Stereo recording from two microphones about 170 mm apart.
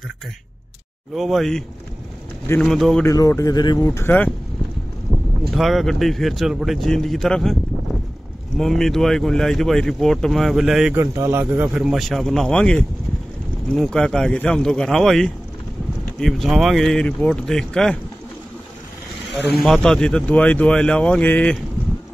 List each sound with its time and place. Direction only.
1.1 s speech: centre (ahead or behind)
2.4 s speech: 15° left (ahead or behind)
2.7 s speech: centre (ahead or behind)
3.1 s speech: 20° left (ahead or behind)
5.1 s boat: centre (ahead or behind)
5.5 s speech: centre (ahead or behind)
8.5 s speech: centre (ahead or behind)
11.0 s speech: 15° right (ahead or behind); by 17.9 s 5° left (ahead or behind)
19.5 s speech: centre (ahead or behind)